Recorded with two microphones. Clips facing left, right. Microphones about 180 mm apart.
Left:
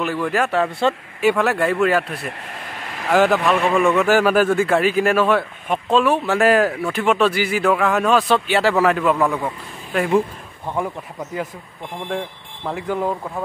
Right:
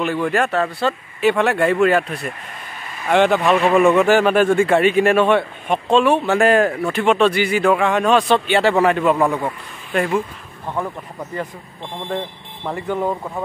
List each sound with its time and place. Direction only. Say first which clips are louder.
0.0 s speech: right 2 dB; 5° left (ahead or behind)
0.7 s speech: left 1 dB; 25° left (ahead or behind)
1.3 s speech: right 4 dB; centre (ahead or behind)
2.8 s a sound: left 2 dB; 90° left
3.1 s speech: right 1 dB; centre (ahead or behind)
9.1 s speech: right 2 dB; 15° right (ahead or behind)
12.6 s speech: right 1 dB; centre (ahead or behind)